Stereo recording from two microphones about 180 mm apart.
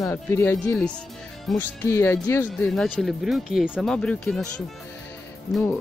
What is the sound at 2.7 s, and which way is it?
Speech, centre (ahead or behind).